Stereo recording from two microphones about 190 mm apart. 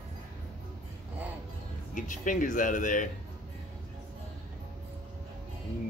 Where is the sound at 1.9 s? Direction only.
45° left (ahead or behind).